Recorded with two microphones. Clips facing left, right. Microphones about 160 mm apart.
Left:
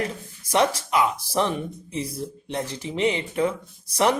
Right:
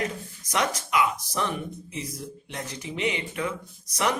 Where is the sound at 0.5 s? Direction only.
30° left (ahead or behind).